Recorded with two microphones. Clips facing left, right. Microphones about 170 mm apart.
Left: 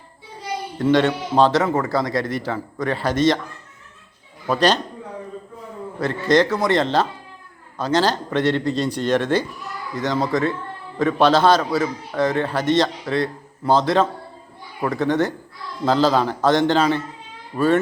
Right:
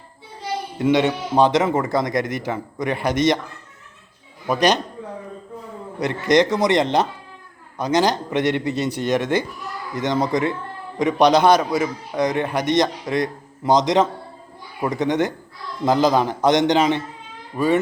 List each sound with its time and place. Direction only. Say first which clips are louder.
0.8 s a man's voice: left 1 dB; 10° right (ahead or behind)
4.4 s a man's voice: even; 15° right (ahead or behind)
6.0 s a man's voice: even; 15° right (ahead or behind)
17.5 s a man's voice: left 2 dB; 10° right (ahead or behind)